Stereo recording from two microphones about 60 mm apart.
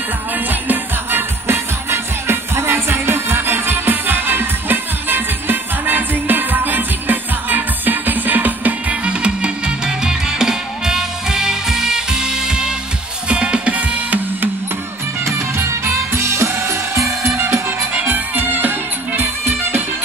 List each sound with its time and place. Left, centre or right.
0.5 s music: right
15.2 s music: right
17.9 s music: right